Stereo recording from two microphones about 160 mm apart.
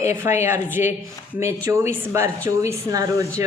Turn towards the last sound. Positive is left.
turn(degrees=-20)  # may be behind; listen again after turning